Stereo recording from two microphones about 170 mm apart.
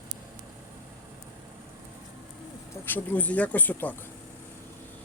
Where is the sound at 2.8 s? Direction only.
10° left (ahead or behind).